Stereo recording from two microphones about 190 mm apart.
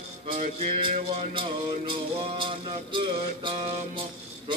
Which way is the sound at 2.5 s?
25° right (ahead or behind).